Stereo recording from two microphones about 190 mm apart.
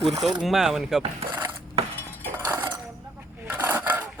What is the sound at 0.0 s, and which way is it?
Speech, centre (ahead or behind).